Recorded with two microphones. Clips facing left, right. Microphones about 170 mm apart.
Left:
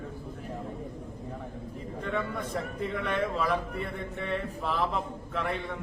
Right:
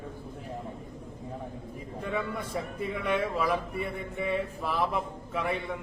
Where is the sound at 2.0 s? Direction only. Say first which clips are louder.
Even; 10° right (ahead or behind).